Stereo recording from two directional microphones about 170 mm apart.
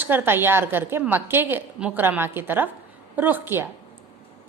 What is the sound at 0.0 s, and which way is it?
A woman's voice, 10° right (ahead or behind).